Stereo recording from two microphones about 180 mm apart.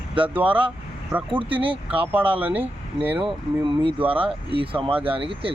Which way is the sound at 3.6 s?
30° right (ahead or behind).